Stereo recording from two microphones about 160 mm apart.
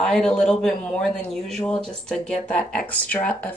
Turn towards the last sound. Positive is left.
turn(degrees=10)  # may be behind; listen again after turning